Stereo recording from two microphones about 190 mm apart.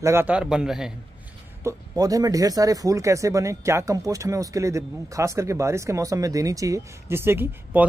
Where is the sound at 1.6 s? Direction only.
15° right (ahead or behind).